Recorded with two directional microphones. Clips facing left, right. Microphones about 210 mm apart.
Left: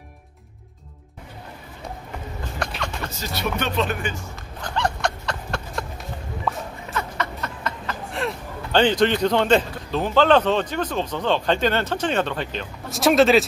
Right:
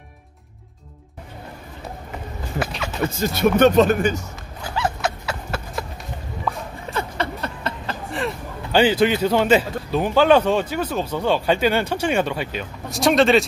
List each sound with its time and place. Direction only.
2.6 s speech: 5° right (ahead or behind)
3.2 s speech: 45° right (ahead or behind)
4.6 s a sound: 5° right (ahead or behind)
6.9 s a sound: 30° right (ahead or behind)
8.1 s a man's voice: centre (ahead or behind)
12.9 s speech: centre (ahead or behind)